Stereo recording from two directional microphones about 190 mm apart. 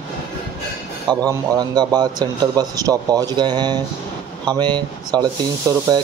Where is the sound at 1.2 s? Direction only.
20° right (ahead or behind).